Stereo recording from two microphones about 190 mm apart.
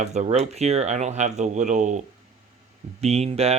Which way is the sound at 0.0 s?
35° right (ahead or behind).